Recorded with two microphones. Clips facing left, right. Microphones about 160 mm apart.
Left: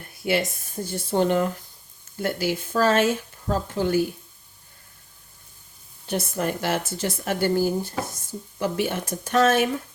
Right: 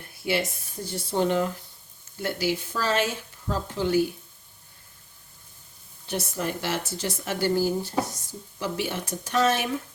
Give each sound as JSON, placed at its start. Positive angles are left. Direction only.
{"t": 0.2, "sound": "speech", "side_deg": 50}
{"t": 6.1, "sound": "speech", "side_deg": 55}